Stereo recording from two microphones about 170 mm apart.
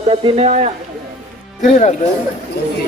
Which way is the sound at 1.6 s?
45° left (ahead or behind).